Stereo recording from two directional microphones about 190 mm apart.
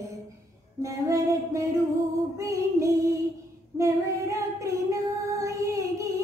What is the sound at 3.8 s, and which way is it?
Child singing, 15° right (ahead or behind).